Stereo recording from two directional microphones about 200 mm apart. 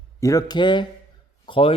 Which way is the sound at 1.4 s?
25° left (ahead or behind).